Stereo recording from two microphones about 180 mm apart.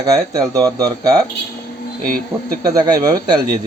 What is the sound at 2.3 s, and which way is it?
Speech, 30° right (ahead or behind).